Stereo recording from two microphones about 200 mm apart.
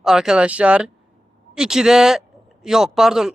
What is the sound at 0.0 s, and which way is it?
Speech, 5° right (ahead or behind).